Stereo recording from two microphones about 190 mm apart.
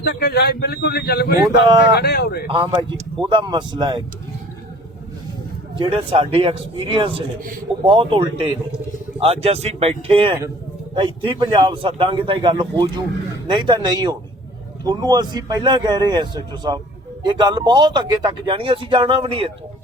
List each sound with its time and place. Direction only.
0.0 s a man's voice: 60° left (ahead or behind)
2.5 s speech: 25° right (ahead or behind)
5.7 s speech: 25° right (ahead or behind)